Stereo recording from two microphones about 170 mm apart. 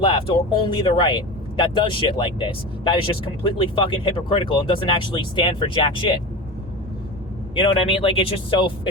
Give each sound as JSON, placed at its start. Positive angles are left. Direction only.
{"t": 0.0, "sound": "speech", "side_deg": 30}
{"t": 7.5, "sound": "speech", "side_deg": 35}